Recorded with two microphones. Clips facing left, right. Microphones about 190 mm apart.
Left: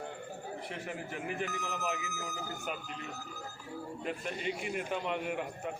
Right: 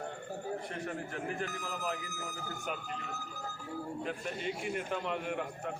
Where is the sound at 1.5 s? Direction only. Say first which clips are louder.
Left 1 dB; 45° right (ahead or behind).